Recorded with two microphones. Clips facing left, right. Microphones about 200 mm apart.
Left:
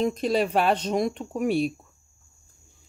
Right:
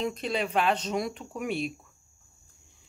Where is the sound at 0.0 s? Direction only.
40° left (ahead or behind).